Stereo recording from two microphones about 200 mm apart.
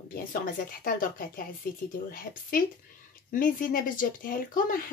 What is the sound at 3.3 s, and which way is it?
Speech, 45° left (ahead or behind).